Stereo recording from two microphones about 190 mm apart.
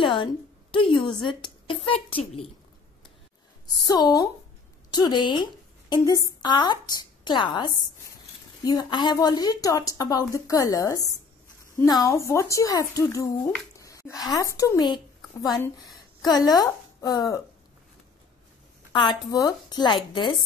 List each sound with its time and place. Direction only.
0.0 s a woman's voice: 25° left (ahead or behind)
3.7 s a woman's voice: 20° left (ahead or behind)
16.3 s a woman's voice: 20° left (ahead or behind)
18.9 s a woman's voice: 20° left (ahead or behind)